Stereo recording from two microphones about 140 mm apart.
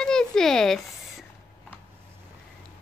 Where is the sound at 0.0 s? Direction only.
5° left (ahead or behind).